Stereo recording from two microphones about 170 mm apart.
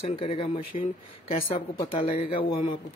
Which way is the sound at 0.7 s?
45° left (ahead or behind).